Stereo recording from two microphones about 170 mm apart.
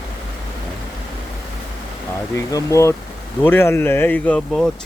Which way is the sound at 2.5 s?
15° left (ahead or behind).